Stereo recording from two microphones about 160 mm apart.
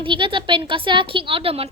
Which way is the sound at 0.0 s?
30° right (ahead or behind).